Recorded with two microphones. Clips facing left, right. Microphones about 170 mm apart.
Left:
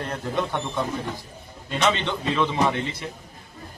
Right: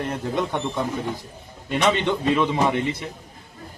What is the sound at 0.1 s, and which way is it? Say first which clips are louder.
Speech: right 2 dB; 15° right (ahead or behind).